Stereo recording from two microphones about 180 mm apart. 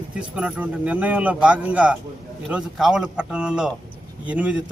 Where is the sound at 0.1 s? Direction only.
5° right (ahead or behind).